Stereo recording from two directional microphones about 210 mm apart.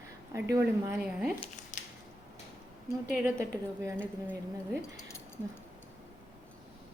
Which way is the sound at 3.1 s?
5° right (ahead or behind).